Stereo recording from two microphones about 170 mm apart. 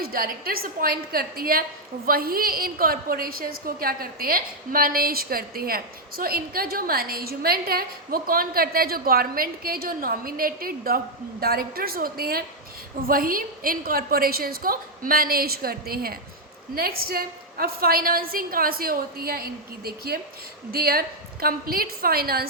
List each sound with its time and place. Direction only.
0.0 s a woman's voice: 60° right (ahead or behind)